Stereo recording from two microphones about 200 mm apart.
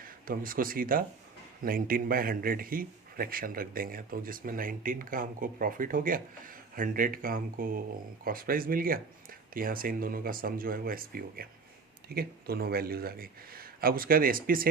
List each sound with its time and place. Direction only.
0.0 s a man's voice: 45° right (ahead or behind)